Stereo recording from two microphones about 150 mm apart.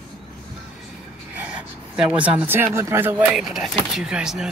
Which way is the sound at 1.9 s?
10° right (ahead or behind).